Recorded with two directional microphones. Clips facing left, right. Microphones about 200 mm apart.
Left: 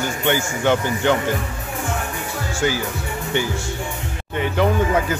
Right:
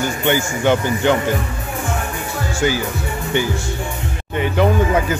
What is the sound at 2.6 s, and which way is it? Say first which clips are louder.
Speech: right 3 dB; 15° right (ahead or behind).